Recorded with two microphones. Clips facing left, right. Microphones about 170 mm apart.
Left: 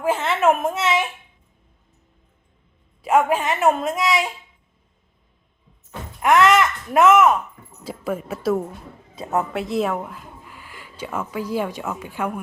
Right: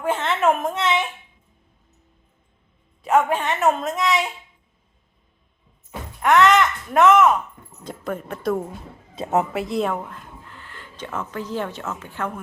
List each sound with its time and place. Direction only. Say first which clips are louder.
0.0 s a child's voice: left 1 dB; 5° left (ahead or behind)
3.0 s a woman's voice: left 1 dB; 10° left (ahead or behind)
6.2 s a woman's voice: even; 5° left (ahead or behind)
9.1 s speech: right 2 dB; 25° right (ahead or behind)
9.5 s speech: left 1 dB; centre (ahead or behind)